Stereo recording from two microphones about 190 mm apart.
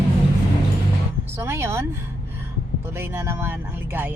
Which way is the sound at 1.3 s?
15° right (ahead or behind).